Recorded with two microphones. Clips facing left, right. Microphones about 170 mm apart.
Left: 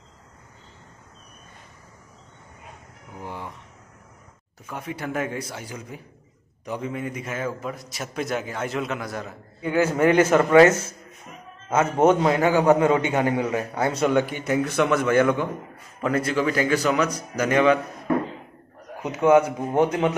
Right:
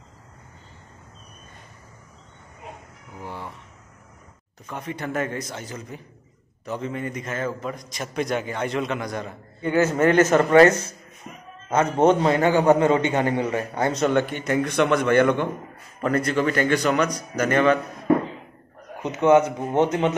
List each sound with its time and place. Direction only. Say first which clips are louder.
3.2 s a sound: even; 15° left (ahead or behind)
4.6 s a man's voice: right 1 dB; 10° left (ahead or behind)
19.0 s a man's voice: even; 10° left (ahead or behind)